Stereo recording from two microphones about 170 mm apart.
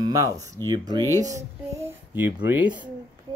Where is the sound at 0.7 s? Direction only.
20° right (ahead or behind).